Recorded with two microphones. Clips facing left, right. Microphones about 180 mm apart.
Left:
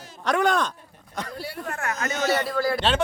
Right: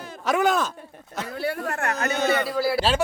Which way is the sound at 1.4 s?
60° right (ahead or behind).